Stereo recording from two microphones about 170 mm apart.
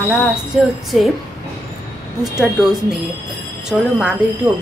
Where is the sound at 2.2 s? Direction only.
5° right (ahead or behind).